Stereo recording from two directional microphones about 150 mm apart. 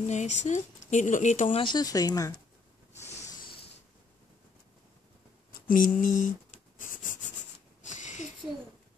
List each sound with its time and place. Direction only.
0.0 s speech: 50° left (ahead or behind)
1.6 s speech: 30° left (ahead or behind)
5.5 s a sound: 65° left (ahead or behind)